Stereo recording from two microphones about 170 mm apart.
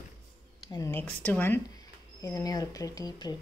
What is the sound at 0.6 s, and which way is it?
Speech, 20° left (ahead or behind).